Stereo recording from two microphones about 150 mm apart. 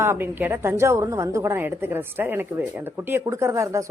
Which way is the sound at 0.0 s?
15° right (ahead or behind).